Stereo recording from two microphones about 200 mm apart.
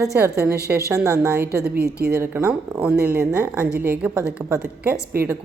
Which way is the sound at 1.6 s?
50° right (ahead or behind).